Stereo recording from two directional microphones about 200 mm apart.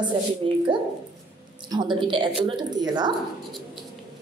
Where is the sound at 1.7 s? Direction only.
25° right (ahead or behind).